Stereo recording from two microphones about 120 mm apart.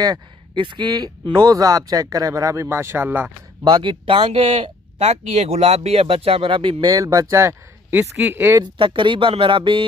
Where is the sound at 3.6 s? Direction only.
40° right (ahead or behind); by 8.6 s 20° right (ahead or behind).